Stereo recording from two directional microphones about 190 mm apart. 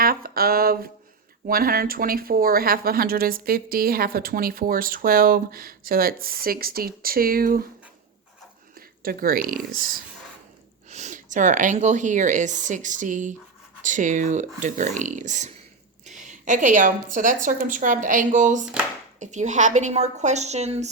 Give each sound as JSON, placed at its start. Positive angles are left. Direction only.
{"t": 0.0, "sound": "a sound", "side_deg": -50}
{"t": 1.5, "sound": "speech", "side_deg": -50}
{"t": 9.0, "sound": "speech", "side_deg": -50}
{"t": 10.8, "sound": "speech", "side_deg": -40}